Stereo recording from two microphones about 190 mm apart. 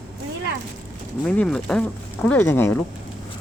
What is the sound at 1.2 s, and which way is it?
Speech, 5° left (ahead or behind).